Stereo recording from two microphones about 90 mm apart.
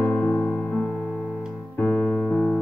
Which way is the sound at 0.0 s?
20° left (ahead or behind).